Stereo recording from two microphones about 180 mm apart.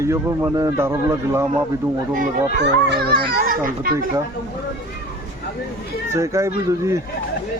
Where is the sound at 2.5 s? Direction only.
70° right (ahead or behind); by 4.0 s 50° right (ahead or behind).